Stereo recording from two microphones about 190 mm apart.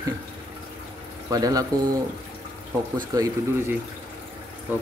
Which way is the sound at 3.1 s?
20° right (ahead or behind).